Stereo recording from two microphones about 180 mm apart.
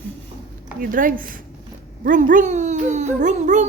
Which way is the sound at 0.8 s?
50° right (ahead or behind).